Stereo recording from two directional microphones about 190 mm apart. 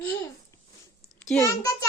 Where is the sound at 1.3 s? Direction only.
15° left (ahead or behind).